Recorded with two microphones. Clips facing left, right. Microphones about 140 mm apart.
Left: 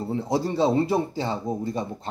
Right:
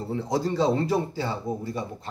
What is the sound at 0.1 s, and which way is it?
Speech, 15° left (ahead or behind).